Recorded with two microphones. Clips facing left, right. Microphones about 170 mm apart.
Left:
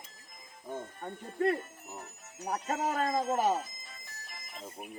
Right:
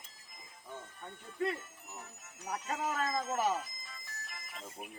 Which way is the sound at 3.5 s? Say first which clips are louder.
Left 4 dB; 30° left (ahead or behind).